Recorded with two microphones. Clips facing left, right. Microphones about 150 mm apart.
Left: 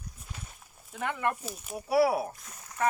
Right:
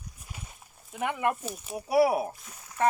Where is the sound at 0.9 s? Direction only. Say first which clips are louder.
Right 3 dB; 10° right (ahead or behind).